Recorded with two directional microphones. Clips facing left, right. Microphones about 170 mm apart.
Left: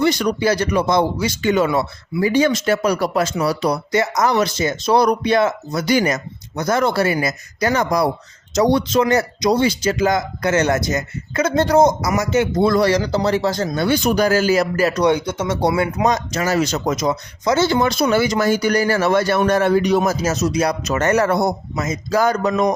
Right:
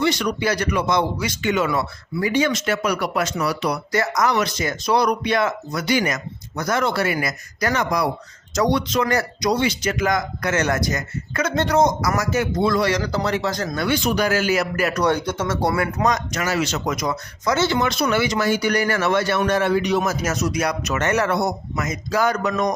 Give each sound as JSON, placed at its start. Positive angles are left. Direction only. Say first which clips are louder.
{"t": 0.0, "sound": "speech", "louder": "left 4 dB", "side_deg": 40}
{"t": 5.8, "sound": "speech", "louder": "left 4 dB", "side_deg": 40}
{"t": 7.8, "sound": "speech", "louder": "left 3 dB", "side_deg": 35}
{"t": 12.6, "sound": "speech", "louder": "left 4 dB", "side_deg": 40}
{"t": 13.0, "sound": "speech", "louder": "left 4 dB", "side_deg": 25}
{"t": 14.9, "sound": "speech", "louder": "left 3 dB", "side_deg": 15}
{"t": 17.6, "sound": "speech", "louder": "left 4 dB", "side_deg": 35}
{"t": 20.0, "sound": "speech", "louder": "left 4 dB", "side_deg": 25}